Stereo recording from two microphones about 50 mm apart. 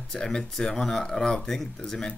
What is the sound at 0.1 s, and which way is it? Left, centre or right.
Speech, centre.